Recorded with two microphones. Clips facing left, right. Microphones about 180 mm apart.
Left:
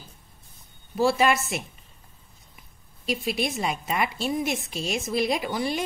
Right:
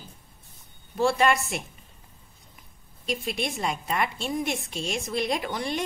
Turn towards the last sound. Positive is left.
turn(degrees=5)  # may be behind; listen again after turning